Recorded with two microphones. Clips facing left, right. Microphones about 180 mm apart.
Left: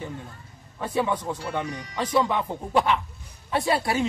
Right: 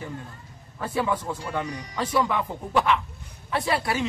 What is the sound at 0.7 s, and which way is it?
Speech, 20° left (ahead or behind).